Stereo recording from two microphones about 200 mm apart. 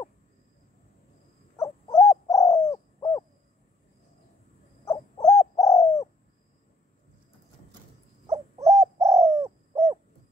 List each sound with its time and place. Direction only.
1.6 s bird: 20° left (ahead or behind)
4.8 s owl: 20° left (ahead or behind)
5.4 s bird: 20° left (ahead or behind)
8.3 s bird: 15° right (ahead or behind)